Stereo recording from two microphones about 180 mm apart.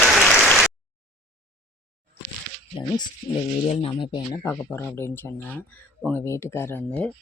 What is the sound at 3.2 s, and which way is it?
Speech, 25° left (ahead or behind).